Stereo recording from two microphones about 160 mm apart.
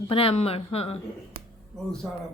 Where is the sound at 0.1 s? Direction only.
35° left (ahead or behind).